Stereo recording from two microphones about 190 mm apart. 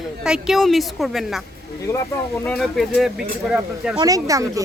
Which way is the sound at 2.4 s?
5° left (ahead or behind).